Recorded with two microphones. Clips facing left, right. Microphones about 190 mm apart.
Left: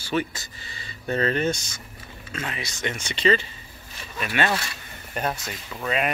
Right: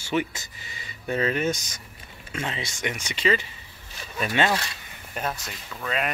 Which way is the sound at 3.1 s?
10° right (ahead or behind).